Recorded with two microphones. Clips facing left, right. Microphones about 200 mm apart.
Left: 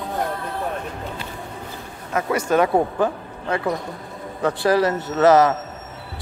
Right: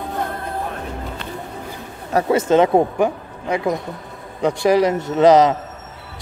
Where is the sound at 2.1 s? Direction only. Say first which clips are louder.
Right 5 dB; 25° right (ahead or behind).